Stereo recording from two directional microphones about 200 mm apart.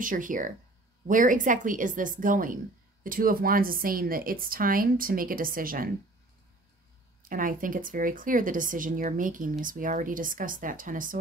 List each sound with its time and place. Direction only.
0.0 s speech: 40° right (ahead or behind)
7.2 s speech: 45° right (ahead or behind)